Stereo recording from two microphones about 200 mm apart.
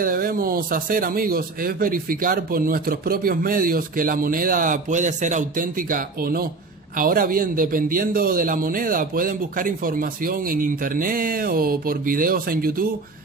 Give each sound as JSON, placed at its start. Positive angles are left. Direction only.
{"t": 0.0, "sound": "a man's voice", "side_deg": -45}